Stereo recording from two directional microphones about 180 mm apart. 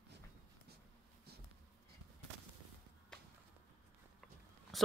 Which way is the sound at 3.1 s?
5° left (ahead or behind).